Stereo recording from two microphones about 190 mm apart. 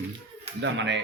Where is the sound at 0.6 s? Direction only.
70° right (ahead or behind).